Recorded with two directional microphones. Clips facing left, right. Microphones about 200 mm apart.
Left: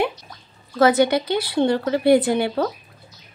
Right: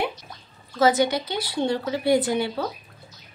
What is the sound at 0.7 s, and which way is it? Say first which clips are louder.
Speech: left 4 dB; 60° left (ahead or behind).